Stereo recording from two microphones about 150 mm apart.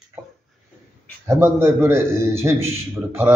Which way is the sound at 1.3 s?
15° right (ahead or behind).